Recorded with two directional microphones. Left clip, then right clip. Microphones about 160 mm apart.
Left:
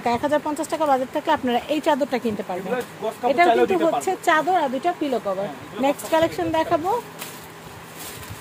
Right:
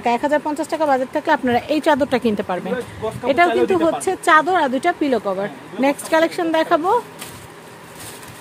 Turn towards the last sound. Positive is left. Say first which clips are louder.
# right 4 dB
turn(degrees=-45)  # may be behind; listen again after turning